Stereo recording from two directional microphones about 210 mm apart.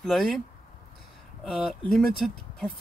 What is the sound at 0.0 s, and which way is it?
Speech, centre (ahead or behind).